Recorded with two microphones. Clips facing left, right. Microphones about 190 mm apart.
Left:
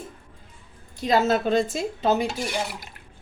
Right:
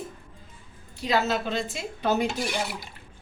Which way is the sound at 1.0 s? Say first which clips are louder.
Left 4 dB; 45° left (ahead or behind).